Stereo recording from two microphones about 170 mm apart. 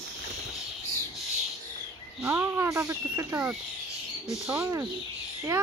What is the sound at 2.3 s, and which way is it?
Speech, 15° right (ahead or behind).